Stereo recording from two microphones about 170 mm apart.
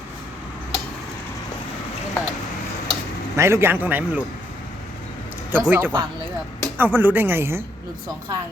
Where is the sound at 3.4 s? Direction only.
15° right (ahead or behind).